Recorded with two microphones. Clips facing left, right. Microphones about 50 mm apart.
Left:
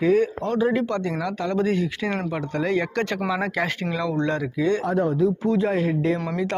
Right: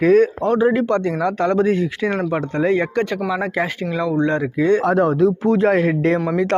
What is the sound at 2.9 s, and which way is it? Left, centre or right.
Speech, centre.